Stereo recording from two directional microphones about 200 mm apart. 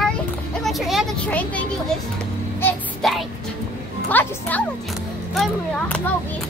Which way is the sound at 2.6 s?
Centre (ahead or behind).